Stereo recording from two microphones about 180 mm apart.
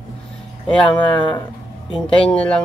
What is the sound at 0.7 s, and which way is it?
Speech, 5° left (ahead or behind).